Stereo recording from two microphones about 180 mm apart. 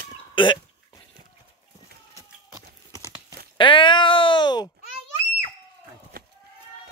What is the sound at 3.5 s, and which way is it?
Speech, 25° left (ahead or behind).